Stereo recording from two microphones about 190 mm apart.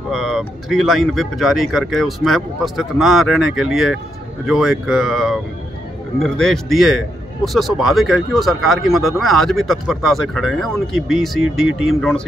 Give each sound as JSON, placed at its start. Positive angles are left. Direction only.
{"t": 0.1, "sound": "speech", "side_deg": 0}